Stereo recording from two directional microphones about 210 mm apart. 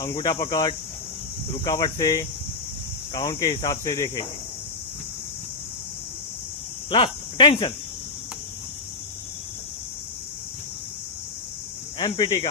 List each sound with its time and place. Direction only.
0.0 s speech: 20° left (ahead or behind)
6.9 s speech: 20° left (ahead or behind)
11.9 s speech: 20° left (ahead or behind)